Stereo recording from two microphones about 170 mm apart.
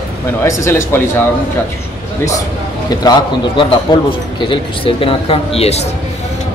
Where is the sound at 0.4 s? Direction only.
15° left (ahead or behind).